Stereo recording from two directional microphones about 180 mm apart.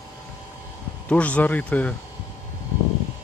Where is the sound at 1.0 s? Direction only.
5° left (ahead or behind).